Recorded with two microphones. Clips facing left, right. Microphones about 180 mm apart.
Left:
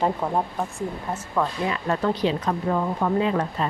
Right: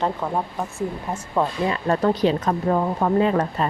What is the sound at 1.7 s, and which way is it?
Speech, 40° right (ahead or behind).